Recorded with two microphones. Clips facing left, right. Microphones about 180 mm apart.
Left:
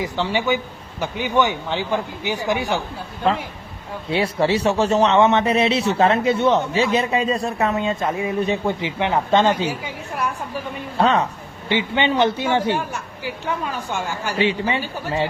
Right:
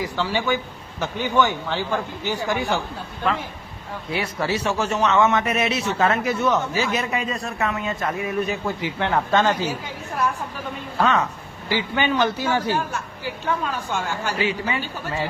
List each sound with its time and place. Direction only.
0.0 s a man's voice: 20° left (ahead or behind)
4.1 s a man's voice: 25° left (ahead or behind)
10.9 s a man's voice: 30° left (ahead or behind); by 14.3 s 15° left (ahead or behind)
14.3 s a man's voice: 30° left (ahead or behind)